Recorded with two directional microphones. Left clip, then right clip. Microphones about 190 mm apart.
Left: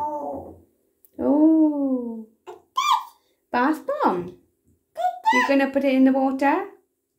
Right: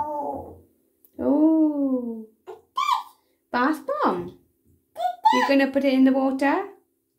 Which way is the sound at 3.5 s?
Centre (ahead or behind).